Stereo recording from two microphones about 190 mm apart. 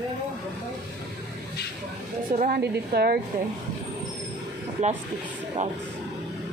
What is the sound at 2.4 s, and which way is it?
Speech, 55° right (ahead or behind).